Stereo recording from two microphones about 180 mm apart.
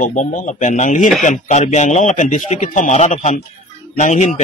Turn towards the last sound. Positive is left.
turn(degrees=40)  # may be behind; listen again after turning